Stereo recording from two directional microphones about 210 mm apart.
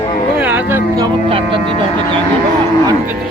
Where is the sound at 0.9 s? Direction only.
25° right (ahead or behind).